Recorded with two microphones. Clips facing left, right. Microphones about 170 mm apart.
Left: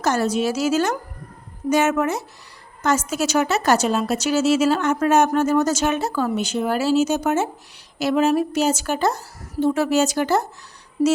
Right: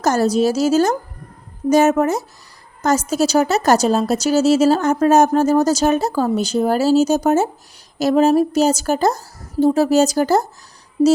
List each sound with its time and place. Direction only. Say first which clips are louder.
0.0 s a woman's voice: right 5 dB; 40° right (ahead or behind)
11.0 s speech: right 5 dB; 25° right (ahead or behind)